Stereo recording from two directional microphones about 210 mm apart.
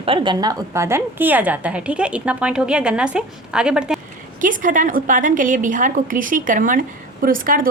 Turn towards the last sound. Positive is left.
turn(degrees=-40)  # may be behind; listen again after turning